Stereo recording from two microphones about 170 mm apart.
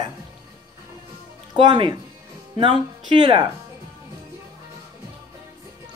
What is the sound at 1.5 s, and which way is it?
Speech, 30° right (ahead or behind).